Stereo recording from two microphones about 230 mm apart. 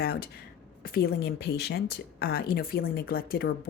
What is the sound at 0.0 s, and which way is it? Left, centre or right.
Speech, left.